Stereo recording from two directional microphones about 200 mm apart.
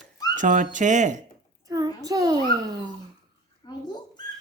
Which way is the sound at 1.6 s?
20° right (ahead or behind).